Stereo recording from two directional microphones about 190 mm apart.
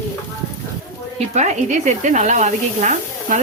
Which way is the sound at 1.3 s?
40° right (ahead or behind).